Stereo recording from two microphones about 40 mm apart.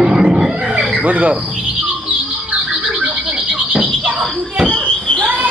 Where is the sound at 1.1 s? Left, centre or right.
Right.